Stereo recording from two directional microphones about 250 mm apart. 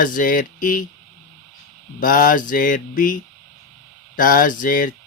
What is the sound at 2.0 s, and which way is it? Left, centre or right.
Speech, left.